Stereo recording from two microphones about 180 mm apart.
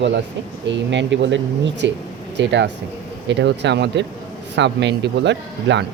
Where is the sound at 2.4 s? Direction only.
80° right.